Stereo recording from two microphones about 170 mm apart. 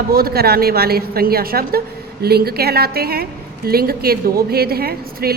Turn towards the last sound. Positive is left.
turn(degrees=-65)  # may be behind; listen again after turning